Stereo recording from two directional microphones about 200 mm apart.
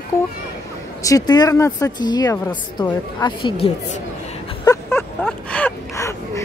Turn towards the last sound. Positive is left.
turn(degrees=15)  # may be behind; listen again after turning